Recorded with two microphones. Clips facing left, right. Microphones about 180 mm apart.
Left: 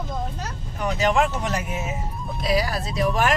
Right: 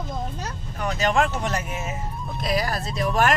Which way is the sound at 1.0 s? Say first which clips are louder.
Left 1 dB; 10° left (ahead or behind).